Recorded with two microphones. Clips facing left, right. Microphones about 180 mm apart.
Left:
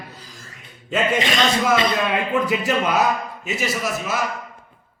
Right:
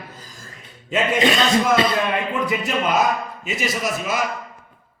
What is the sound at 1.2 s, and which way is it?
Speech, 40° right (ahead or behind).